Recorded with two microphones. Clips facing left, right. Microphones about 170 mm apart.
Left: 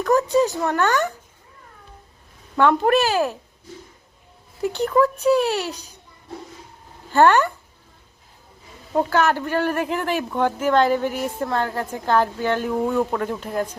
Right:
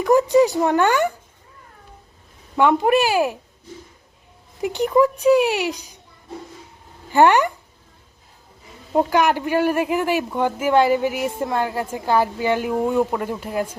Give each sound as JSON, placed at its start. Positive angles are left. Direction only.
{"t": 0.0, "sound": "a sound", "side_deg": -15}
{"t": 2.6, "sound": "speech", "side_deg": -15}
{"t": 4.6, "sound": "speech", "side_deg": -15}
{"t": 7.1, "sound": "speech", "side_deg": -15}
{"t": 8.9, "sound": "speech", "side_deg": -15}